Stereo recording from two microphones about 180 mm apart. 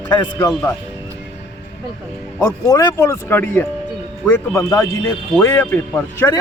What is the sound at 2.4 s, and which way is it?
Speech, 20° left (ahead or behind).